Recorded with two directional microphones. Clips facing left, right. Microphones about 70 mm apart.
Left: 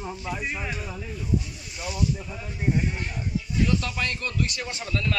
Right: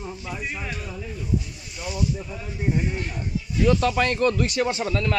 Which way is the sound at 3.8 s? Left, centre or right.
Right.